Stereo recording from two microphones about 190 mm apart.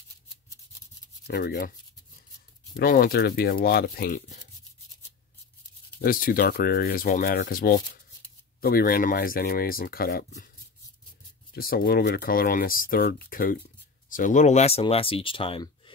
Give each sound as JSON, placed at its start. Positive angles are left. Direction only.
{"t": 1.2, "sound": "speech", "side_deg": 60}
{"t": 2.7, "sound": "speech", "side_deg": 50}
{"t": 5.9, "sound": "speech", "side_deg": 50}
{"t": 11.5, "sound": "speech", "side_deg": 50}